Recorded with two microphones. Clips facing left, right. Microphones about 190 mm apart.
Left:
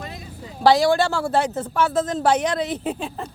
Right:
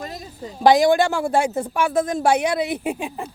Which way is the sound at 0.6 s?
15° right (ahead or behind).